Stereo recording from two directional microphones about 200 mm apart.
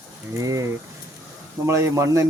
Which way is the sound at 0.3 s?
15° right (ahead or behind).